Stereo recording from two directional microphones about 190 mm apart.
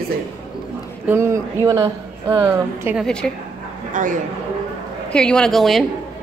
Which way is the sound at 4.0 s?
45° right (ahead or behind).